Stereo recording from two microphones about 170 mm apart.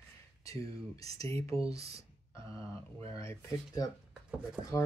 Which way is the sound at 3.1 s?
15° left (ahead or behind).